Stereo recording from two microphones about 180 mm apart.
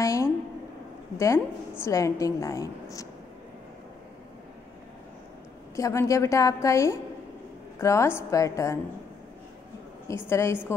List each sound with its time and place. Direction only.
0.0 s a sound: 15° left (ahead or behind)
1.1 s a woman's voice: 15° left (ahead or behind)
5.8 s a woman's voice: 15° left (ahead or behind)
10.0 s a woman's voice: 15° left (ahead or behind)